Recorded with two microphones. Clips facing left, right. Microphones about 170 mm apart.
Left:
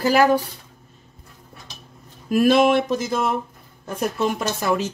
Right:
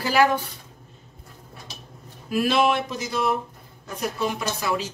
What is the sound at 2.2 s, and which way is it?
Speech, 50° left (ahead or behind).